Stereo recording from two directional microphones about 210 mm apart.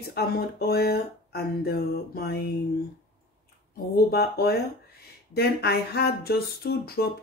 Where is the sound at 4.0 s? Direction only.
45° left (ahead or behind).